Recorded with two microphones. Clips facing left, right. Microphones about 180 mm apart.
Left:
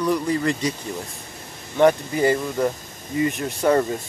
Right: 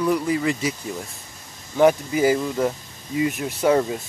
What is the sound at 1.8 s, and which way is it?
Speech, 5° right (ahead or behind).